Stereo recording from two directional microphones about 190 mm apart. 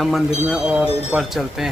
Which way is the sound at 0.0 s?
Centre (ahead or behind).